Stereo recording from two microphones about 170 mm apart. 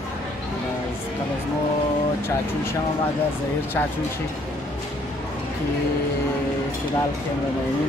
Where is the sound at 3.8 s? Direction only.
10° left (ahead or behind).